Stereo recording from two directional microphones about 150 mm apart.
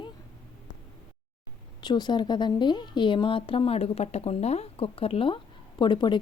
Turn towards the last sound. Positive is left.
turn(degrees=30)  # may be behind; listen again after turning